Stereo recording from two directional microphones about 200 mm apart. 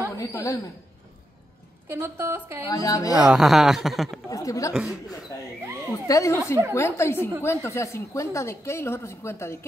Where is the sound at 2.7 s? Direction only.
15° left (ahead or behind).